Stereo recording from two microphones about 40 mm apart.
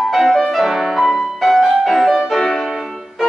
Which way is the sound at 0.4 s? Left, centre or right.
Centre.